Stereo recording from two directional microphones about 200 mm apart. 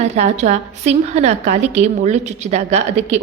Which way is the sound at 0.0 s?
35° right (ahead or behind).